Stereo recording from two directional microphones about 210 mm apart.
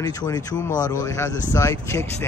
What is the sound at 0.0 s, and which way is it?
Speech, 20° left (ahead or behind).